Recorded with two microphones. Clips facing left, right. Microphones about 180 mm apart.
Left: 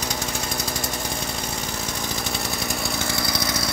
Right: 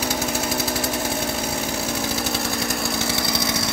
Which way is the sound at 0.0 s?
5° right (ahead or behind).